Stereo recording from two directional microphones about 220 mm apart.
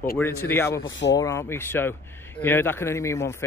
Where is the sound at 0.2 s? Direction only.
10° left (ahead or behind).